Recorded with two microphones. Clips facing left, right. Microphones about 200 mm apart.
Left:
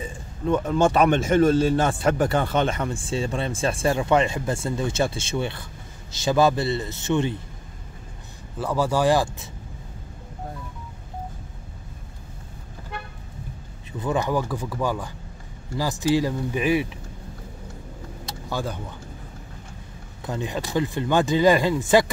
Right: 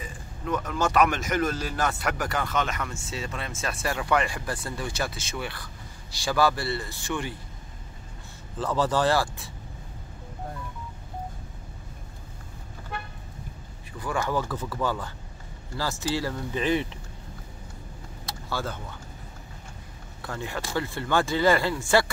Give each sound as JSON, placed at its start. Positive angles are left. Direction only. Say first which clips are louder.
{"t": 0.0, "sound": "a man's voice", "louder": "left 7 dB", "side_deg": 30}
{"t": 8.5, "sound": "speech", "louder": "left 2 dB", "side_deg": 10}
{"t": 13.9, "sound": "speech", "louder": "left 4 dB", "side_deg": 20}
{"t": 18.5, "sound": "speech", "louder": "left 3 dB", "side_deg": 15}
{"t": 20.2, "sound": "speech", "louder": "left 5 dB", "side_deg": 20}